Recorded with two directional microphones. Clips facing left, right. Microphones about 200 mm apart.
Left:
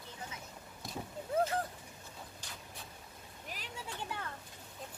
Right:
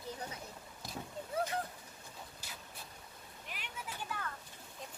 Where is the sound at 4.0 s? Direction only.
25° left (ahead or behind).